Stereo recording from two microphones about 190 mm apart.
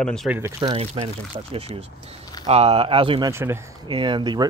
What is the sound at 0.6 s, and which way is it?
Speech, 30° right (ahead or behind).